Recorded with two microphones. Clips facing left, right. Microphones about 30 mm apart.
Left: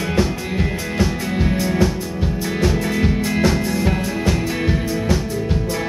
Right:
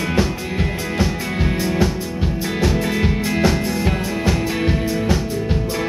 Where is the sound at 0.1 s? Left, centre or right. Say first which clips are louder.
Even; centre.